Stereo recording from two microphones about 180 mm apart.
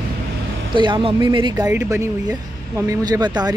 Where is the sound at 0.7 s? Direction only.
25° right (ahead or behind).